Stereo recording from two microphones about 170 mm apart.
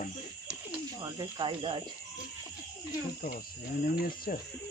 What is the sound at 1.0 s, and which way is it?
Speech, 25° right (ahead or behind).